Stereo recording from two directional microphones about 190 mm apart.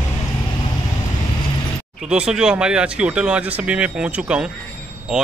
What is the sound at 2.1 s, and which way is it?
Speech, 5° right (ahead or behind).